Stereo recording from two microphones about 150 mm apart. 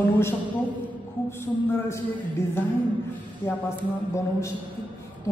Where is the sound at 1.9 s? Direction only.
20° left (ahead or behind).